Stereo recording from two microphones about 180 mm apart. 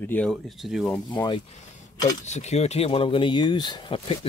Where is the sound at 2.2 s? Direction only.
40° left (ahead or behind).